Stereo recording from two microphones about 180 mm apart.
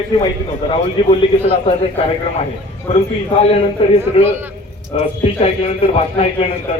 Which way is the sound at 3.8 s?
30° left (ahead or behind).